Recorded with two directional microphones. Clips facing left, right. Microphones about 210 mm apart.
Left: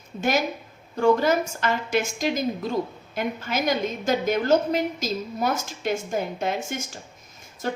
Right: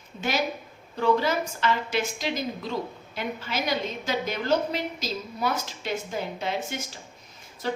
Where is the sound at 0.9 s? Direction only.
45° left (ahead or behind).